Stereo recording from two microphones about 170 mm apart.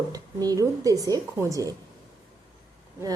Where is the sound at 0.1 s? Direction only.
20° right (ahead or behind).